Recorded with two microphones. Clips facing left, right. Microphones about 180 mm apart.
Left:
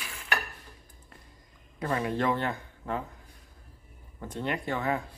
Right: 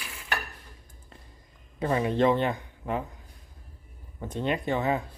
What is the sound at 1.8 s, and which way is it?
Speech, 20° right (ahead or behind).